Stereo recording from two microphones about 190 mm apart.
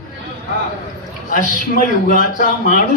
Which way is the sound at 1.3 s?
45° left (ahead or behind).